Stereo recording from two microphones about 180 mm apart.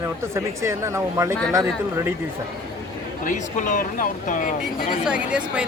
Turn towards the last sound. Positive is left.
turn(degrees=-5)  # may be behind; listen again after turning